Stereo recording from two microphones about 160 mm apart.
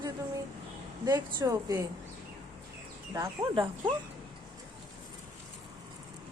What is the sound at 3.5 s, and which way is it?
Speech, 30° right (ahead or behind).